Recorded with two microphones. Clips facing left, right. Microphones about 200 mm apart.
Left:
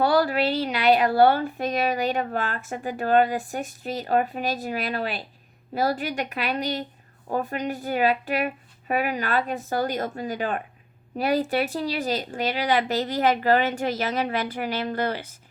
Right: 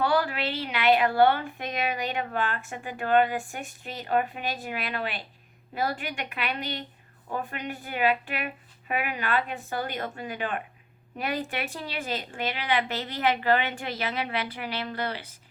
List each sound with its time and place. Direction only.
0.0 s a woman's voice: 40° left (ahead or behind)